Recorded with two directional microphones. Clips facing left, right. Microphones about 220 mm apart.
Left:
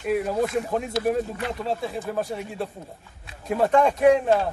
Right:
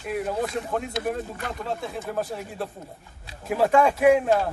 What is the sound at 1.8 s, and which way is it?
A man's voice, centre (ahead or behind).